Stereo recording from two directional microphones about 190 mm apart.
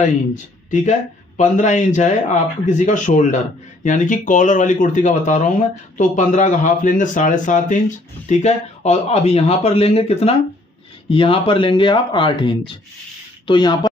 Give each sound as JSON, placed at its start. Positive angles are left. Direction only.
{"t": 0.7, "sound": "speech", "side_deg": 40}